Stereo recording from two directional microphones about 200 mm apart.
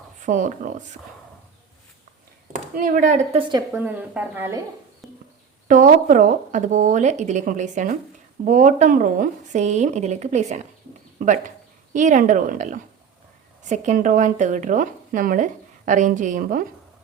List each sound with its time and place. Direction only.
0.2 s speech: 40° right (ahead or behind)
2.7 s speech: 40° right (ahead or behind)
3.8 s speech: 10° right (ahead or behind)
5.0 s a sound: centre (ahead or behind)
5.6 s speech: 40° right (ahead or behind)